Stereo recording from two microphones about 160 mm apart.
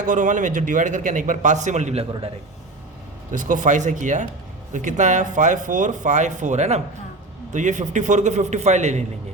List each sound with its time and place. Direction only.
0.0 s a man's voice: 55° right (ahead or behind)
3.3 s a man's voice: 55° right (ahead or behind)